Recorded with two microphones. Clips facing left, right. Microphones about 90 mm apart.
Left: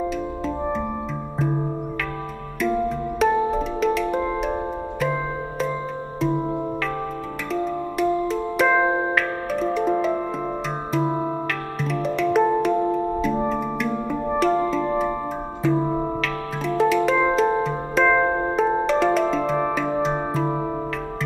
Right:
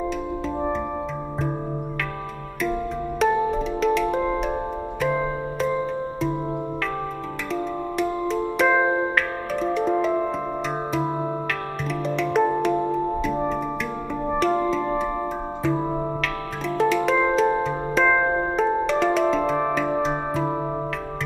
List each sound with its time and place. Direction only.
3.2 s music: centre (ahead or behind)
7.5 s music: centre (ahead or behind)
8.8 s music: 20° left (ahead or behind)
9.1 s music: centre (ahead or behind)
11.8 s music: centre (ahead or behind)